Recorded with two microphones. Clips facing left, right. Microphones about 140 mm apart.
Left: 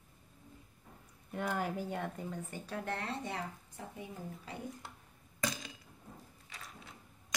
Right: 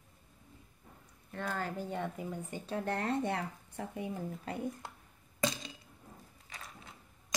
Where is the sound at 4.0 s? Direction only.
55° right (ahead or behind).